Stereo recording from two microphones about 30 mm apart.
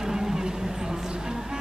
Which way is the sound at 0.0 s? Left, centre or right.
Centre.